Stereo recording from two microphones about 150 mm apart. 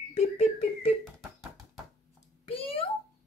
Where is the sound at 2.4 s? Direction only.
40° left (ahead or behind).